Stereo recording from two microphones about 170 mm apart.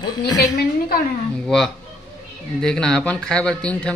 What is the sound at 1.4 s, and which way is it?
A man's voice, 5° left (ahead or behind).